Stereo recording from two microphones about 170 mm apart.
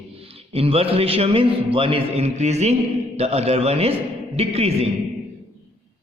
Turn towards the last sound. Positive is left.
turn(degrees=-35)  # may be behind; listen again after turning